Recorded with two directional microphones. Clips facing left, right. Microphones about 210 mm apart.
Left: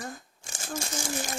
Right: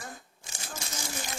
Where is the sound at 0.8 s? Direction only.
50° left (ahead or behind).